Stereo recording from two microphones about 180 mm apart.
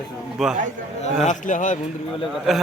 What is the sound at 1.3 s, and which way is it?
Speech, 45° left (ahead or behind).